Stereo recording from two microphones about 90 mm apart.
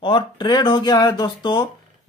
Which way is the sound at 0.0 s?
55° left (ahead or behind).